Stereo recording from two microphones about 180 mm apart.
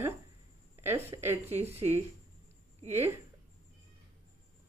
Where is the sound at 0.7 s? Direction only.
15° right (ahead or behind).